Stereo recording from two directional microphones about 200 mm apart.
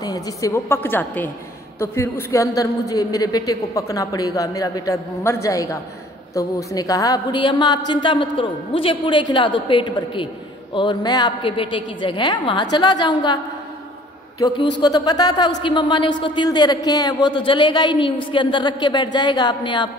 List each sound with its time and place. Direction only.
0.0 s a woman's voice: 15° left (ahead or behind)
14.4 s a woman's voice: 15° left (ahead or behind)